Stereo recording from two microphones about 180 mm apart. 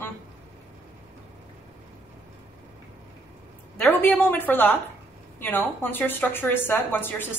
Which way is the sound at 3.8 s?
10° left (ahead or behind).